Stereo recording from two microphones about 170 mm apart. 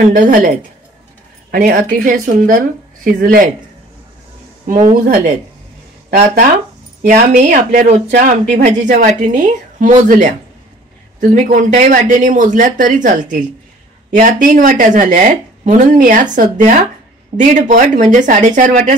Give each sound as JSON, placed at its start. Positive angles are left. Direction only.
{"t": 0.1, "sound": "speech", "side_deg": -50}
{"t": 1.5, "sound": "speech", "side_deg": -55}
{"t": 4.6, "sound": "speech", "side_deg": -55}
{"t": 7.0, "sound": "speech", "side_deg": -55}